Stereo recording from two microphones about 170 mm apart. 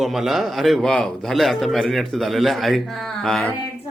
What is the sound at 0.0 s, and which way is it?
A man's voice, centre (ahead or behind).